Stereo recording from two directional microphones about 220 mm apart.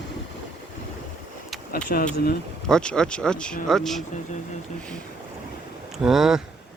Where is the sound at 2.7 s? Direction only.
5° left (ahead or behind).